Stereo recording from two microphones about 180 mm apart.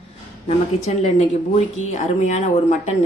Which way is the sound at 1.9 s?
40° left (ahead or behind).